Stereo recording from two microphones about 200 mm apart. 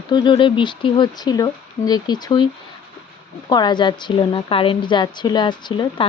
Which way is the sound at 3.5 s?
20° left (ahead or behind).